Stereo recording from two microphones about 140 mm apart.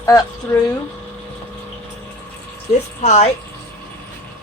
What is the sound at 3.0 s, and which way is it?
Speech, 50° left (ahead or behind).